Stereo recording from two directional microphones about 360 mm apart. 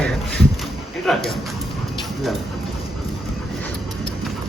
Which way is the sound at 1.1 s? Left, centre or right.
Centre.